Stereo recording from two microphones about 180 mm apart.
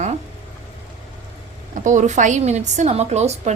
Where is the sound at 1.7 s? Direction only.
45° right (ahead or behind).